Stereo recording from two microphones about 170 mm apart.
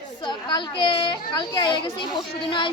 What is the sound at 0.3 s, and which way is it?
A child's voice, 25° left (ahead or behind).